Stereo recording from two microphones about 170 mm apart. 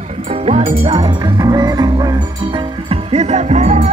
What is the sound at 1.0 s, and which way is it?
Music, 25° right (ahead or behind).